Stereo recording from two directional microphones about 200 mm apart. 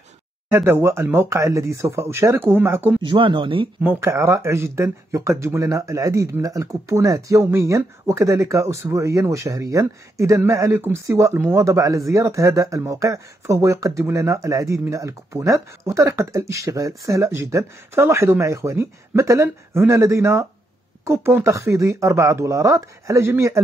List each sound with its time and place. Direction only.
0.5 s speech: 10° right (ahead or behind)
3.0 s speech: 25° right (ahead or behind)
3.8 s speech: 10° right (ahead or behind)